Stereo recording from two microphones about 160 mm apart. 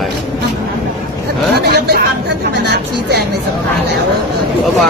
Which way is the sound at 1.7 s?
85° right.